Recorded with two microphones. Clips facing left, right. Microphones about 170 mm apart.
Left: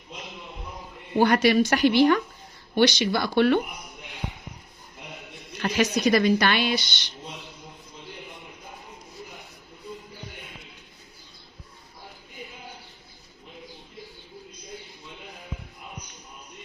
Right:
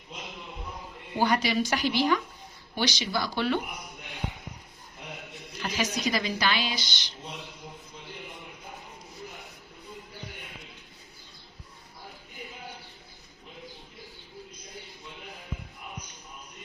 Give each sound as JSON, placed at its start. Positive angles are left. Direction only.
{"t": 1.2, "sound": "speech", "side_deg": 65}
{"t": 5.6, "sound": "speech", "side_deg": 65}